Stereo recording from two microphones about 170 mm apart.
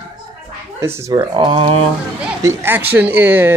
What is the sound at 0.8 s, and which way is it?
Speech, 15° right (ahead or behind).